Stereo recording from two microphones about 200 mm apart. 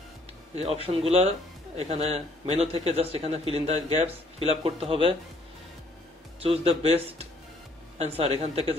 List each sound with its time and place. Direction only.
0.8 s speech: 30° right (ahead or behind)
6.4 s speech: 30° right (ahead or behind)